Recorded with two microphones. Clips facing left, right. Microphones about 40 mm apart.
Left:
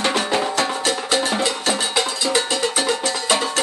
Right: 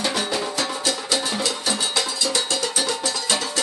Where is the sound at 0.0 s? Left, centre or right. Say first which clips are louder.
Left 4 dB; left.